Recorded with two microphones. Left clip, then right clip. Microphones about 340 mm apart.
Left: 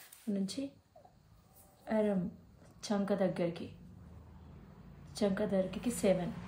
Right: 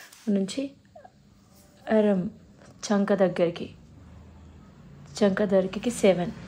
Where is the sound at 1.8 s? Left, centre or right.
Right.